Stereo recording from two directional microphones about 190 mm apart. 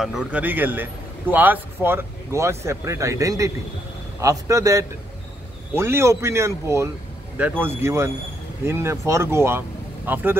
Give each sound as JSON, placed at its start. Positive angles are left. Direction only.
{"t": 0.0, "sound": "speech", "side_deg": -5}